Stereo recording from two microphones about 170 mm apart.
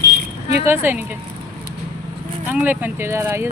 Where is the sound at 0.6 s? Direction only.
15° right (ahead or behind).